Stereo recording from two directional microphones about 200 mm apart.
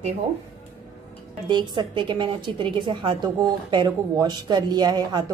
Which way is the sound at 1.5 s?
20° right (ahead or behind).